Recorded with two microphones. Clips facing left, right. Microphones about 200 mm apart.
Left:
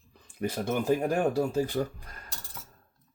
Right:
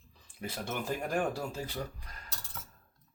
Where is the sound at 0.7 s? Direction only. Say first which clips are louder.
Left 9 dB; 40° left (ahead or behind).